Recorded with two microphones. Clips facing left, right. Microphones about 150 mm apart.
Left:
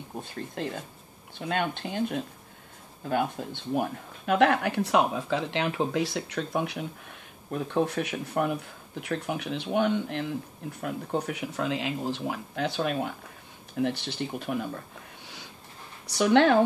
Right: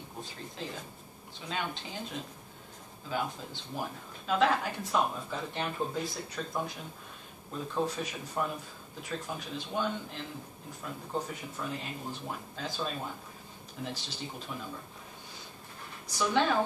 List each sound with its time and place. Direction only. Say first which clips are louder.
0.2 s speech: left 7 dB; 60° left (ahead or behind)
16.1 s speech: left 8 dB; 70° left (ahead or behind)